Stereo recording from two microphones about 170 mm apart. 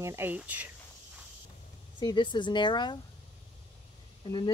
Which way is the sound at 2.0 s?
25° left (ahead or behind).